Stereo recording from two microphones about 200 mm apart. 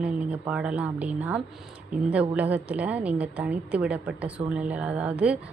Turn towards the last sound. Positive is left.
turn(degrees=-5)  # may be behind; listen again after turning